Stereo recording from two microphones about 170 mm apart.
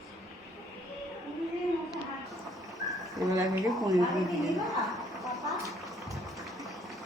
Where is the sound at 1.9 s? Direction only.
Centre (ahead or behind).